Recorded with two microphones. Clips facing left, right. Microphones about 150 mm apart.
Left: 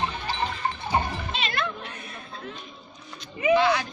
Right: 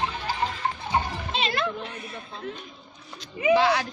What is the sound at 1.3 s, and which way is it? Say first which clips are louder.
Music: right 4 dB; 30° right (ahead or behind).